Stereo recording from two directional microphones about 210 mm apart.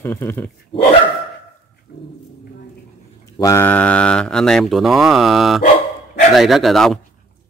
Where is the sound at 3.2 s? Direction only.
15° left (ahead or behind).